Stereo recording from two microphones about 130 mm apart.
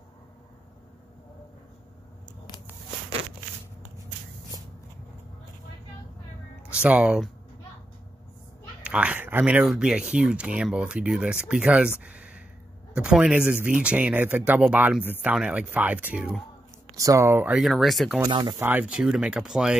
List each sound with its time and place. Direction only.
6.7 s speech: 10° right (ahead or behind)
8.8 s speech: 10° right (ahead or behind)
16.9 s speech: 25° right (ahead or behind)
17.5 s speech: centre (ahead or behind)
18.3 s speech: 35° right (ahead or behind)
18.6 s speech: 10° right (ahead or behind)